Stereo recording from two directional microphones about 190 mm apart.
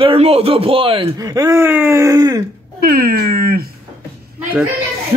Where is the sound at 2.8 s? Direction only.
50° right (ahead or behind).